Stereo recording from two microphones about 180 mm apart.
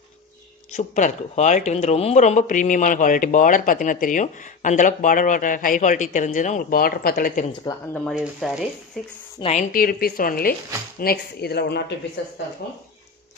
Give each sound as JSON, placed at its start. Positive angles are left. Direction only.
{"t": 0.7, "sound": "speech", "side_deg": 45}
{"t": 7.9, "sound": "speech", "side_deg": 5}
{"t": 9.4, "sound": "a woman's voice", "side_deg": 35}
{"t": 9.7, "sound": "speech", "side_deg": 55}